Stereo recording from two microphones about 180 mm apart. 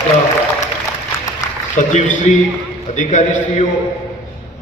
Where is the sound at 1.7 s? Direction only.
40° left (ahead or behind).